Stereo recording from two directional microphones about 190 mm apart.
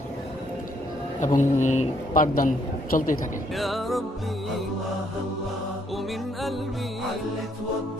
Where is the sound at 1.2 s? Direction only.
40° left (ahead or behind).